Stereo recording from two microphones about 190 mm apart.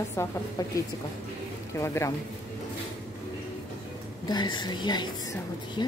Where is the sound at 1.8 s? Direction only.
15° left (ahead or behind).